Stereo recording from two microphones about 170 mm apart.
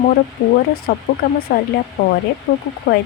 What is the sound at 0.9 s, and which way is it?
Speech, 60° left (ahead or behind).